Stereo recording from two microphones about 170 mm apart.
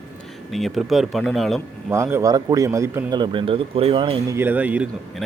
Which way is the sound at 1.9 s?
15° right (ahead or behind).